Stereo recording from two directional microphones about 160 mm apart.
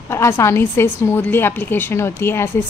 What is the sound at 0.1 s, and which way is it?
A woman's voice, 15° left (ahead or behind).